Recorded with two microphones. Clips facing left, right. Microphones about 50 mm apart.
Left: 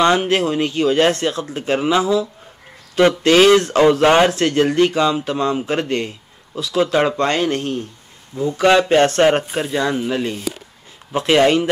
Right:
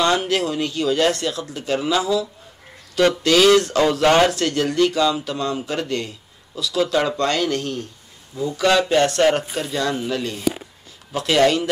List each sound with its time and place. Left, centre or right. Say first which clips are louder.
0.0 s speech: left 4 dB; left
4.3 s speech: left 5 dB; left